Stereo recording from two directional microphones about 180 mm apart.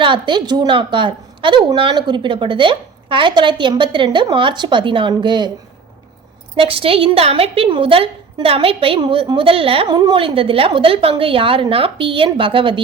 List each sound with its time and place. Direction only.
0.0 s a woman's voice: 25° right (ahead or behind)
6.6 s a woman's voice: 30° right (ahead or behind)